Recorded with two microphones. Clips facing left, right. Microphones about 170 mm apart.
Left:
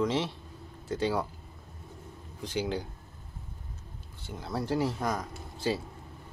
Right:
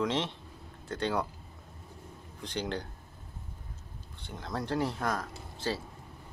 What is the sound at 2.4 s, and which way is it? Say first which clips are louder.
Speech: left 3 dB; 10° left (ahead or behind).